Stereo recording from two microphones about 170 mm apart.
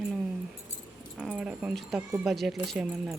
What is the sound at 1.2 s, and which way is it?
A woman's voice, 5° right (ahead or behind).